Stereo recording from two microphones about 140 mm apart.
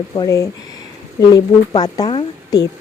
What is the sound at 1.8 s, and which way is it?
Speech, 30° left (ahead or behind).